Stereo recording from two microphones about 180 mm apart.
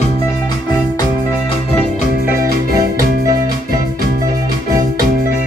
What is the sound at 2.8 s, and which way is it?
Keyboard, 50° right (ahead or behind).